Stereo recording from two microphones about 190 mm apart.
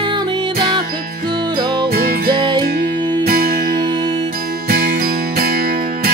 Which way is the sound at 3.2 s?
50° right (ahead or behind).